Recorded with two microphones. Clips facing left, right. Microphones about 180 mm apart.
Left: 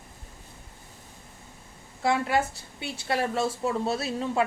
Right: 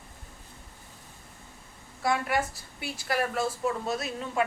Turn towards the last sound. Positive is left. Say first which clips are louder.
# left 4 dB
turn(degrees=30)  # may be behind; listen again after turning